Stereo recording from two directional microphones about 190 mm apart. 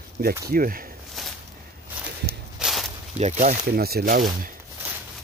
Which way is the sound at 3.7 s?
55° right (ahead or behind).